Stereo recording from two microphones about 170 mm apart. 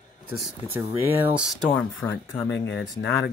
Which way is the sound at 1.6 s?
10° left (ahead or behind).